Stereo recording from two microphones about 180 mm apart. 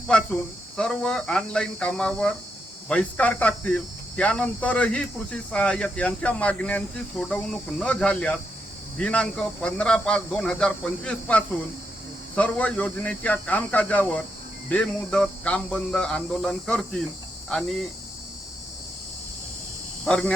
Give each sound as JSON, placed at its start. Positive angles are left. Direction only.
{"t": 0.8, "sound": "speech", "side_deg": 5}
{"t": 20.1, "sound": "speech", "side_deg": 5}